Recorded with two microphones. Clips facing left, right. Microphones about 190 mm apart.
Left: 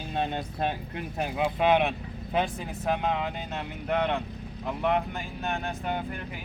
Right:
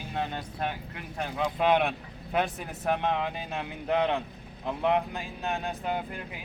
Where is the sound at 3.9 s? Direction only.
15° right (ahead or behind).